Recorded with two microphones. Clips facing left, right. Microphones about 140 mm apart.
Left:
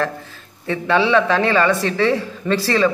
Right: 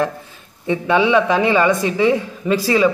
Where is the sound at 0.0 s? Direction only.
15° right (ahead or behind).